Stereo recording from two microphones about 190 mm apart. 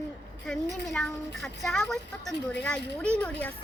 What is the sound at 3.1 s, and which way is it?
Speech, 5° left (ahead or behind).